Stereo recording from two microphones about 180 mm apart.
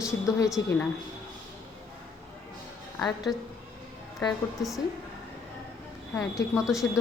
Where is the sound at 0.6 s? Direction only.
90° left.